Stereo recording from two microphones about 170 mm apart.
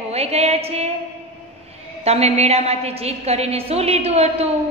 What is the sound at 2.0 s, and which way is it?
A woman's voice, 40° right (ahead or behind).